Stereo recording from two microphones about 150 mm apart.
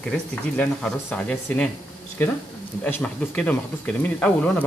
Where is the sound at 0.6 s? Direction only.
5° left (ahead or behind).